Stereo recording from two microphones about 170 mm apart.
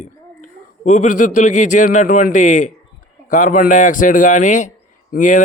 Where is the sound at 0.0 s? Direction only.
45° left (ahead or behind).